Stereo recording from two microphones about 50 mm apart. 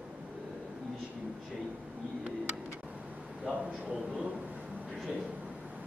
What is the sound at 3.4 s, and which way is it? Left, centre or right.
Speech, centre.